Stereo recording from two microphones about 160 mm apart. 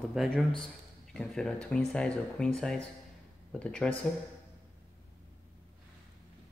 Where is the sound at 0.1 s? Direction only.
Centre (ahead or behind).